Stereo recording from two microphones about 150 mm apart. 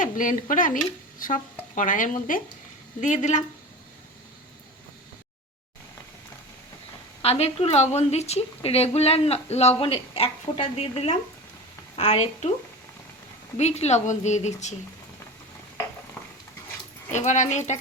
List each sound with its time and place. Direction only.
0.0 s a woman's voice: 60° left (ahead or behind)
7.2 s a woman's voice: 45° left (ahead or behind)
13.6 s a woman's voice: 45° left (ahead or behind)
17.1 s a woman's voice: 55° left (ahead or behind)